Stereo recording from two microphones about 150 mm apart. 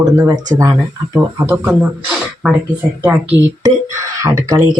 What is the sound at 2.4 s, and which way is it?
Speech, 5° right (ahead or behind).